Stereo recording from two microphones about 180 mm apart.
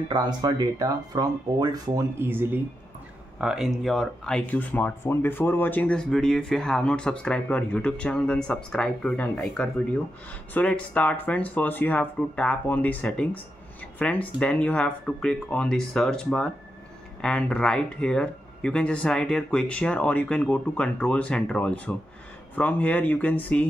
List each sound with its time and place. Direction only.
0.1 s speech: 20° right (ahead or behind); by 23.6 s 10° left (ahead or behind)